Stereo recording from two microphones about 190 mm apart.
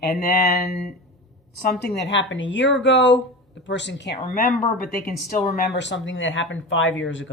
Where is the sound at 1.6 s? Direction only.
55° left (ahead or behind).